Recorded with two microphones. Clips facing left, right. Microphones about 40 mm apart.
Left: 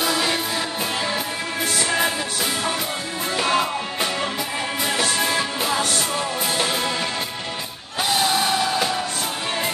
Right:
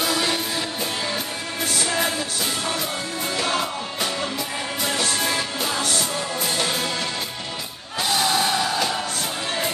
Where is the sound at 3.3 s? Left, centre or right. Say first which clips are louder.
Left 4 dB; left.